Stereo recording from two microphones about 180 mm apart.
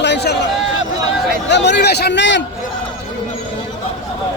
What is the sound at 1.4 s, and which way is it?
Speech, 70° left (ahead or behind).